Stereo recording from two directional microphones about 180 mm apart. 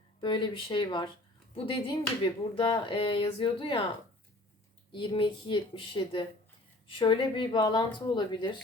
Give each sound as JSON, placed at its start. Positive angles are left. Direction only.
{"t": 0.2, "sound": "speech", "side_deg": 25}
{"t": 4.9, "sound": "speech", "side_deg": 25}